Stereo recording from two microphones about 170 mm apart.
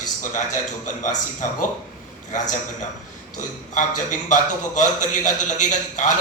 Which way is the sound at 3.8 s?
50° left (ahead or behind).